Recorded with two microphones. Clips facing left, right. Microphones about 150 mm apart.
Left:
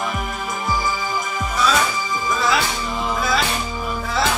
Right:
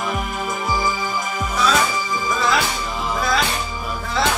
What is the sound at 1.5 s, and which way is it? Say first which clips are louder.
Music: even; centre (ahead or behind).